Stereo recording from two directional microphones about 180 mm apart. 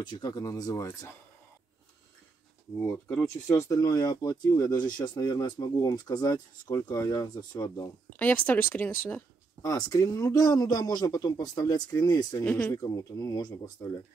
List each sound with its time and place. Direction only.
0.0 s speech: 20° left (ahead or behind)
2.8 s speech: 10° left (ahead or behind)
8.2 s speech: 10° left (ahead or behind)
12.4 s speech: 10° left (ahead or behind)
12.8 s speech: 20° left (ahead or behind)